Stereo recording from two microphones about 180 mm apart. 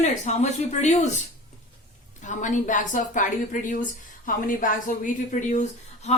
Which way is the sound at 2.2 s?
45° left (ahead or behind).